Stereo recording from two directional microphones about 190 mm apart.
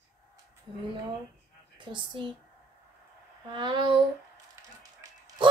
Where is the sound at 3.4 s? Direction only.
25° right (ahead or behind).